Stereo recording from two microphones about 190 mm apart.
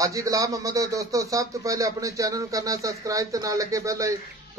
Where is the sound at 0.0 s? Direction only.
15° right (ahead or behind).